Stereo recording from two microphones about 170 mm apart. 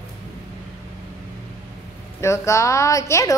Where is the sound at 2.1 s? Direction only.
15° left (ahead or behind).